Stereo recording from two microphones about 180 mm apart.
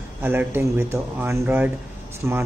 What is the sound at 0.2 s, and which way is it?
Speech, 10° right (ahead or behind).